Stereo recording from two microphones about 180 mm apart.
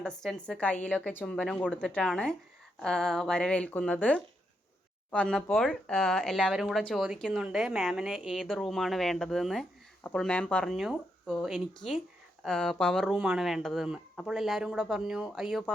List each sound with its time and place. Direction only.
0.0 s speech: 5° left (ahead or behind)